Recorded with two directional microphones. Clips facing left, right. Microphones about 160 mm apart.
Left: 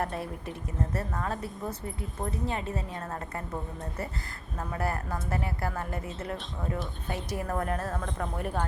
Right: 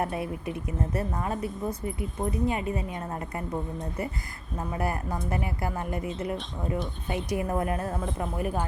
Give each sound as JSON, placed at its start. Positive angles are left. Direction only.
{"t": 0.0, "sound": "speech", "side_deg": -10}
{"t": 6.3, "sound": "speech", "side_deg": 0}
{"t": 7.3, "sound": "speech", "side_deg": -15}